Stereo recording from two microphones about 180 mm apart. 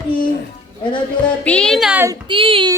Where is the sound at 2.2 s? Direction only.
30° right (ahead or behind).